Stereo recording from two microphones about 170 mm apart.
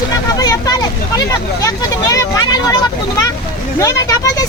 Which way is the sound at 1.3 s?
20° left (ahead or behind).